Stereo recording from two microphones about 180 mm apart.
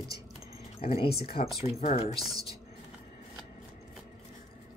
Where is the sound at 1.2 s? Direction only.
35° left (ahead or behind).